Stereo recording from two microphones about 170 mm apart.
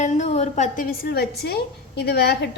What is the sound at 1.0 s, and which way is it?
A woman's voice, 65° left (ahead or behind).